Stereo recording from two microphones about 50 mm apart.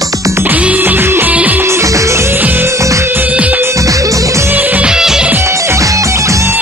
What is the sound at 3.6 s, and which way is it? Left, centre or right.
Music, right.